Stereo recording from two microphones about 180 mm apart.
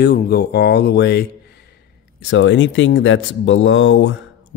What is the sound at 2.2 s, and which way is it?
Speech, 90° left.